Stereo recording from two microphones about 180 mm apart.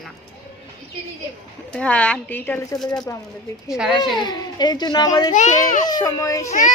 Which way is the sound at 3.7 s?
Centre (ahead or behind).